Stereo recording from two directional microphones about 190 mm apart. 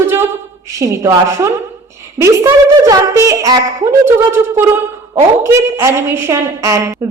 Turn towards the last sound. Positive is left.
turn(degrees=-15)  # may be behind; listen again after turning